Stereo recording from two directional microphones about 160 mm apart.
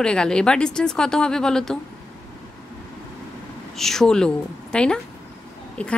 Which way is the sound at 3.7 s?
Centre (ahead or behind).